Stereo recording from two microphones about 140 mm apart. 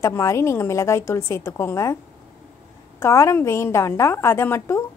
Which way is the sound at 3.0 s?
20° left (ahead or behind).